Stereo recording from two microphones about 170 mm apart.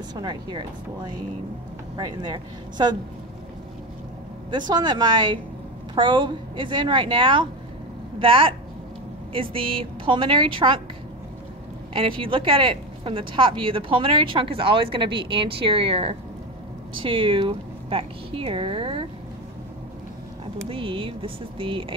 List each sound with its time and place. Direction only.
0.1 s a woman's voice: 25° right (ahead or behind)
4.5 s a woman's voice: 25° right (ahead or behind)
11.9 s speech: 30° right (ahead or behind)
20.6 s speech: 30° right (ahead or behind)